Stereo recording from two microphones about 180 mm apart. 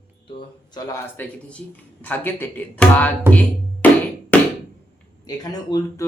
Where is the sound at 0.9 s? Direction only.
10° left (ahead or behind).